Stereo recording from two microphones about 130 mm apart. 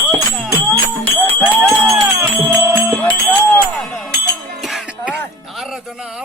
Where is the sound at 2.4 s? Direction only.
Centre (ahead or behind).